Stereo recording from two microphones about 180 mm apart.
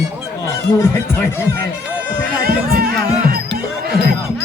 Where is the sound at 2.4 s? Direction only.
55° right (ahead or behind).